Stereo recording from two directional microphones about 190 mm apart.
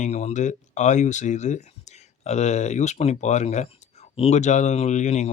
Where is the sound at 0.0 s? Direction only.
35° left (ahead or behind).